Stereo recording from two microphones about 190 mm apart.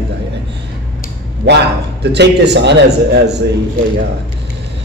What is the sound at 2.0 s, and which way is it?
A man's voice, 65° right (ahead or behind).